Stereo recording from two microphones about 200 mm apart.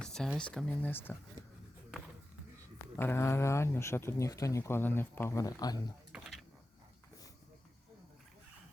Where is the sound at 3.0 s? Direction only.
10° left (ahead or behind).